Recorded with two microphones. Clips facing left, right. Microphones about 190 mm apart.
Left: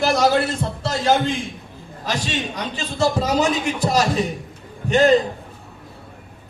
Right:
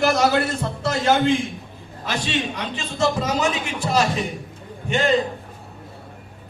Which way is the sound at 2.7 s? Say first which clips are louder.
Left 2 dB; 35° left (ahead or behind).